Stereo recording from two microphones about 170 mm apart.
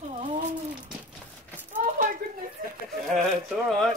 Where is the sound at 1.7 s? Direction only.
50° right (ahead or behind).